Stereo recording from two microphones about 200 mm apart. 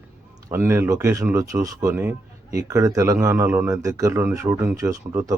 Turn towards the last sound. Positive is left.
turn(degrees=-15)  # may be behind; listen again after turning